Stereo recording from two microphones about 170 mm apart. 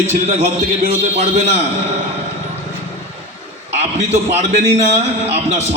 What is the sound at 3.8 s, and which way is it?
A man's voice, 40° right (ahead or behind).